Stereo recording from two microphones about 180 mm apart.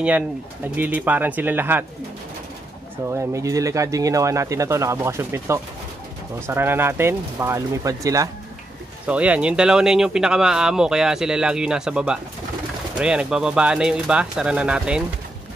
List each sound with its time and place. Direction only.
0.7 s speech: 10° right (ahead or behind)
3.1 s speech: 15° right (ahead or behind)
9.0 s speech: 5° right (ahead or behind)